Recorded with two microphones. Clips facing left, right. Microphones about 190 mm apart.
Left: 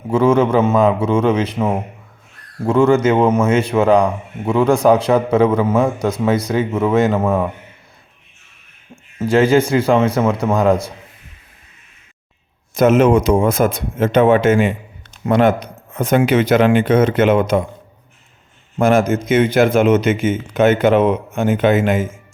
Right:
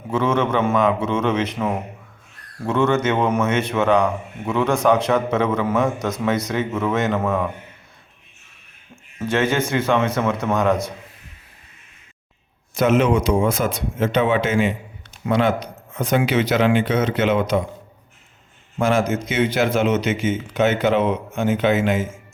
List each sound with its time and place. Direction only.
0.1 s a man's voice: 35° left (ahead or behind)
9.1 s a man's voice: 35° left (ahead or behind)
12.7 s speech: 45° left (ahead or behind)
18.8 s speech: 50° left (ahead or behind)